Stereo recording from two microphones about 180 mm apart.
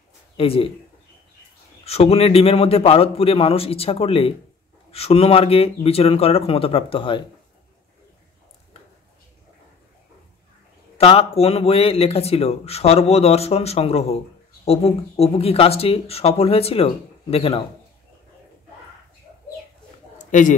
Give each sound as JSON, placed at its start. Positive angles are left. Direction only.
{"t": 0.4, "sound": "speech", "side_deg": 30}
{"t": 1.9, "sound": "speech", "side_deg": 35}
{"t": 11.0, "sound": "speech", "side_deg": 35}
{"t": 20.2, "sound": "a sound", "side_deg": 45}